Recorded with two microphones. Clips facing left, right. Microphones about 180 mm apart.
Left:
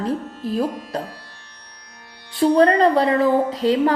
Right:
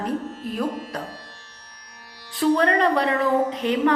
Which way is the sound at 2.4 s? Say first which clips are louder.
Left 5 dB; 35° left (ahead or behind).